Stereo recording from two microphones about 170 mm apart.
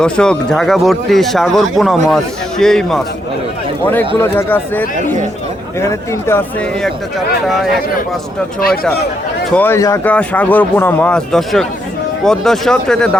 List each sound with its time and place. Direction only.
0.0 s speech: 5° left (ahead or behind)
4.2 s speech: 15° left (ahead or behind)
5.9 s speech: 15° left (ahead or behind)
7.4 s speech: centre (ahead or behind)
9.5 s speech: 10° left (ahead or behind)